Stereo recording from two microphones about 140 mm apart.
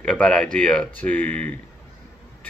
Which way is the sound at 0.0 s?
5° left (ahead or behind).